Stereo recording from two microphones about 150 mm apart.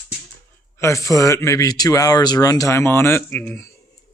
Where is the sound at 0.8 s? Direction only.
20° left (ahead or behind).